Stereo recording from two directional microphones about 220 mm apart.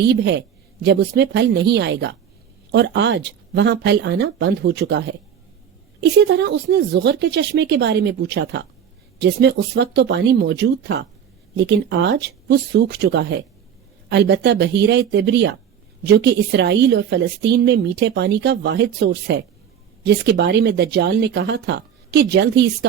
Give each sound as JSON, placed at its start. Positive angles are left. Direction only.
{"t": 0.1, "sound": "a woman's voice", "side_deg": -50}